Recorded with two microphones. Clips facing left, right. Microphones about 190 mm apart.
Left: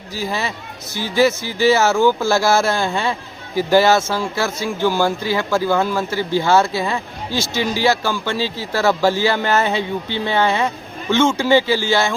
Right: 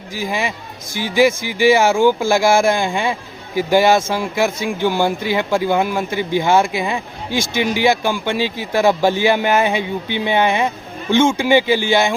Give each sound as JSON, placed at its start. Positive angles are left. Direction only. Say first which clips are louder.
{"t": 0.1, "sound": "speech", "louder": "right 1 dB", "side_deg": -15}